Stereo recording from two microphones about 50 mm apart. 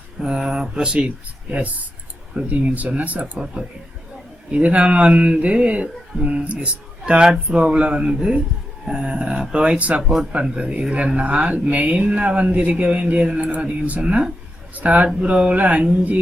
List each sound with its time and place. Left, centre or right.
0.2 s speech: centre
0.9 s speech: right
4.5 s speech: right